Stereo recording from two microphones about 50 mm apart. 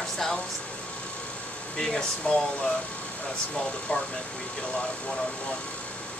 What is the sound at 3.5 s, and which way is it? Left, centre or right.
Speech, centre.